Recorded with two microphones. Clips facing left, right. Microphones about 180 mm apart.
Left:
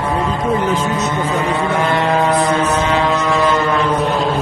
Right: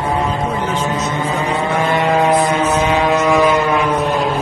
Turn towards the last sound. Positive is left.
turn(degrees=-20)  # may be behind; listen again after turning